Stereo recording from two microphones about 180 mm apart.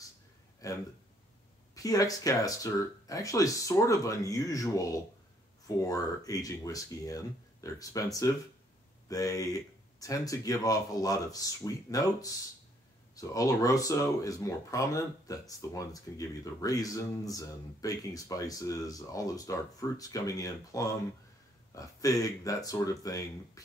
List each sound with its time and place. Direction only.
0.6 s speech: 20° left (ahead or behind)